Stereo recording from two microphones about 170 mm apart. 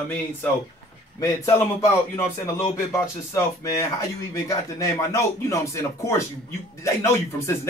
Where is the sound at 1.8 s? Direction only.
15° left (ahead or behind).